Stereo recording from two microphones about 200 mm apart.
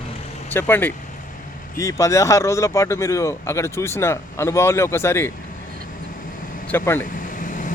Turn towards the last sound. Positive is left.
turn(degrees=40)  # may be behind; listen again after turning